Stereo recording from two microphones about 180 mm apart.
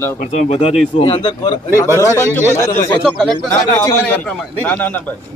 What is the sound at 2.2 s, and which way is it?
A man's voice, 10° left (ahead or behind).